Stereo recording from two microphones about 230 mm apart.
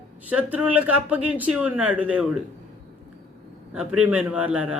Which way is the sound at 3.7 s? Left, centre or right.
Centre.